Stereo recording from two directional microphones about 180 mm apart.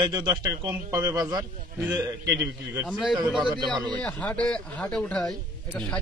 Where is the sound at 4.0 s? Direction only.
5° left (ahead or behind).